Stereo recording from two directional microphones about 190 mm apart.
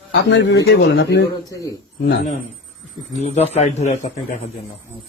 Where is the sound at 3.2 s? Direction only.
35° left (ahead or behind).